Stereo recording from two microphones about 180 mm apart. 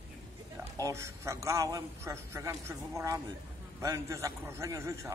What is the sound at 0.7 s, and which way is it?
A man's voice, 15° right (ahead or behind).